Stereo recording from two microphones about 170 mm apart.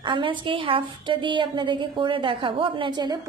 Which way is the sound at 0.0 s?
30° right (ahead or behind).